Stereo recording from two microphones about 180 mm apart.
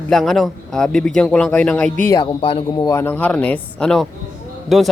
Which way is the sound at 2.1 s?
25° left (ahead or behind).